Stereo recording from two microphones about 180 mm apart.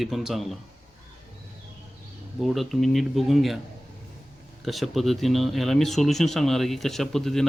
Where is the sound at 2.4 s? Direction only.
Centre (ahead or behind).